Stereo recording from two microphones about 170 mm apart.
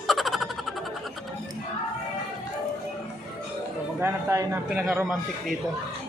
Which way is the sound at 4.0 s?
15° right (ahead or behind).